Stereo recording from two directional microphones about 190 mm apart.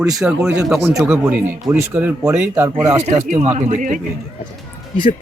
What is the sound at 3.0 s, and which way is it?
Speech, 40° right (ahead or behind).